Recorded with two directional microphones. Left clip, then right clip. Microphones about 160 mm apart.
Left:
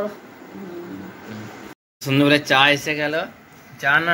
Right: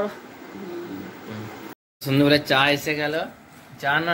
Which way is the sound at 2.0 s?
5° right (ahead or behind).